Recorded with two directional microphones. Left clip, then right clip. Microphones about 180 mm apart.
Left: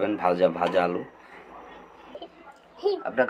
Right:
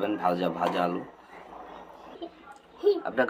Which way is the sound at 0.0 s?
20° left (ahead or behind).